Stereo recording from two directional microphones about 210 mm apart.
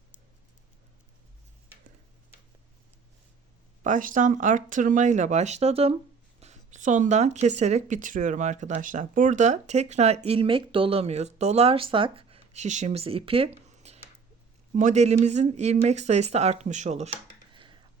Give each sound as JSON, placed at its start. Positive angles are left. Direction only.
{"t": 3.8, "sound": "speech", "side_deg": -40}
{"t": 17.5, "sound": "whispering", "side_deg": -20}